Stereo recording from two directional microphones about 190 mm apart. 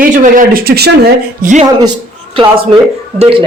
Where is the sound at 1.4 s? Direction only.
40° right (ahead or behind).